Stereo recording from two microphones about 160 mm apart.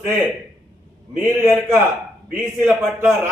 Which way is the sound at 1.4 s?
15° right (ahead or behind).